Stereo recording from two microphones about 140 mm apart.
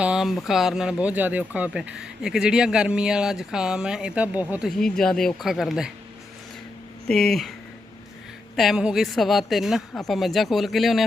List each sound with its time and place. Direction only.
0.0 s speech: 5° right (ahead or behind)
4.8 s speech: 5° left (ahead or behind)
7.1 s speech: 5° left (ahead or behind)
8.5 s speech: 5° right (ahead or behind)